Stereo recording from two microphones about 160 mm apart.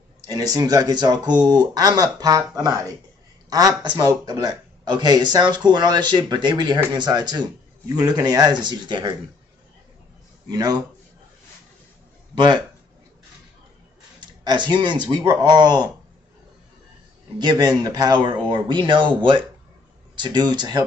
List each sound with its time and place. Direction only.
0.3 s a man's voice: 25° right (ahead or behind)
10.5 s a man's voice: 25° right (ahead or behind)
14.2 s a man's voice: 30° right (ahead or behind)
17.4 s a man's voice: 25° right (ahead or behind)